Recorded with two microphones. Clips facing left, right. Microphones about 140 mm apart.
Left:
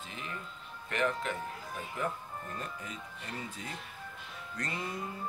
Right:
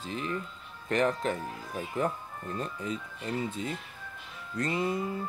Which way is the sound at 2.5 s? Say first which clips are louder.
Right 7 dB; 30° right (ahead or behind).